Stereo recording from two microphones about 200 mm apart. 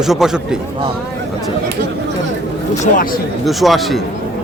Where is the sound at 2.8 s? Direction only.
35° left (ahead or behind).